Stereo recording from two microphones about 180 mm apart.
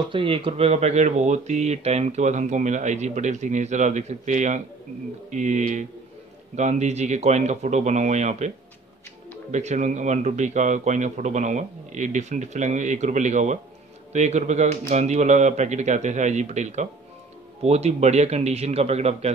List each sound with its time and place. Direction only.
0.1 s speech: 30° right (ahead or behind)